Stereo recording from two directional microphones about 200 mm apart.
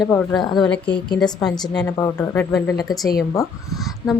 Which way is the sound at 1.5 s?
20° left (ahead or behind).